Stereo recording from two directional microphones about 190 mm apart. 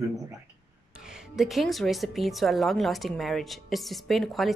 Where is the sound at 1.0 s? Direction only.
Centre (ahead or behind).